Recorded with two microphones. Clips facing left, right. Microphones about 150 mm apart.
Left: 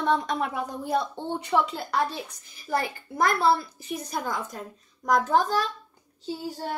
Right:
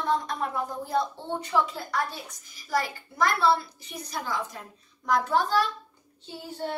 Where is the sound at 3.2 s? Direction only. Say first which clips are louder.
Left 1 dB; 50° left (ahead or behind).